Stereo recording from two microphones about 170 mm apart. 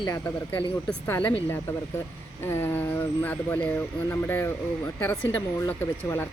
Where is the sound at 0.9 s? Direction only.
10° left (ahead or behind).